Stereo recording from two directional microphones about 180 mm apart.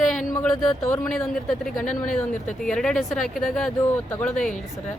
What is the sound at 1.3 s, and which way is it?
Speech, 5° left (ahead or behind).